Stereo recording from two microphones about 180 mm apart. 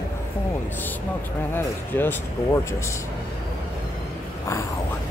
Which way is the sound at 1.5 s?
10° left (ahead or behind).